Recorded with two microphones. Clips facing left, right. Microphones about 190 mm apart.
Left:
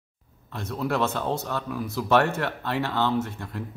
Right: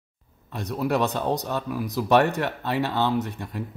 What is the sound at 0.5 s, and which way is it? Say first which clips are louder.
Speech: right 3 dB; 15° right (ahead or behind).